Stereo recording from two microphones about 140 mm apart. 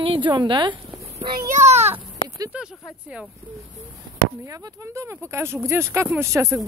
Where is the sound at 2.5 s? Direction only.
5° right (ahead or behind).